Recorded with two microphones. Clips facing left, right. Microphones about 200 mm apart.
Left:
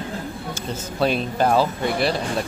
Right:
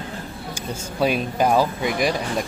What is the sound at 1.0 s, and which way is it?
Speech, 10° right (ahead or behind).